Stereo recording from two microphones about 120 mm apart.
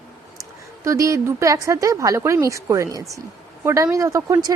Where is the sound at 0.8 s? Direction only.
25° right (ahead or behind).